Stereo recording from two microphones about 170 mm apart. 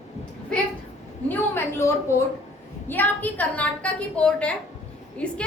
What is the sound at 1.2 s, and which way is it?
A woman's voice, 15° left (ahead or behind).